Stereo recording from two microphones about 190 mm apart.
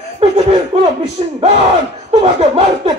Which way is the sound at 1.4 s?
35° right (ahead or behind).